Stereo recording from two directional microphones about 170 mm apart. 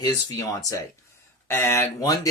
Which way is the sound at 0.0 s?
20° left (ahead or behind).